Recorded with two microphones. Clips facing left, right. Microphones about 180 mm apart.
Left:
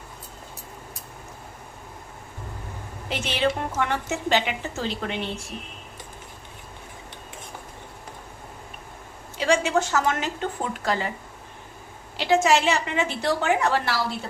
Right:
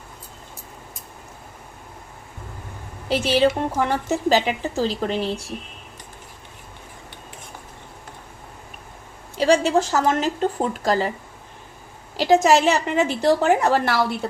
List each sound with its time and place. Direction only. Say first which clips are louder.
3.1 s a woman's voice: right 7 dB; 35° right (ahead or behind)
9.4 s a woman's voice: right 4 dB; 35° right (ahead or behind)
12.1 s a woman's voice: right 4 dB; 40° right (ahead or behind)